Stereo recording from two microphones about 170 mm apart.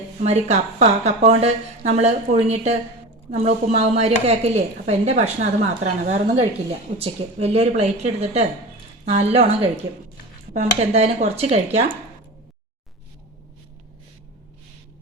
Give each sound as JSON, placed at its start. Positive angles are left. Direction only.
{"t": 0.2, "sound": "a woman's voice", "side_deg": -40}